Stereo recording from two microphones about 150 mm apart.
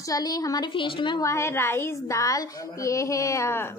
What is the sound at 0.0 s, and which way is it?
Speech, 25° left (ahead or behind).